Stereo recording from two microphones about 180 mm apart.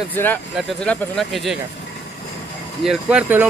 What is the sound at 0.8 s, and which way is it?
Speech, centre (ahead or behind).